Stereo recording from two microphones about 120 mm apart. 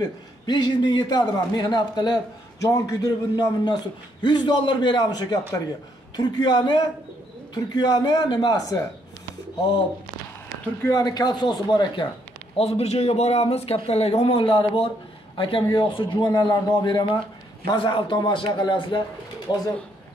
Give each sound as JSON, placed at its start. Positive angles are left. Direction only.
{"t": 0.0, "sound": "a man's voice", "side_deg": 35}
{"t": 10.8, "sound": "a man's voice", "side_deg": 30}
{"t": 12.5, "sound": "a man's voice", "side_deg": 55}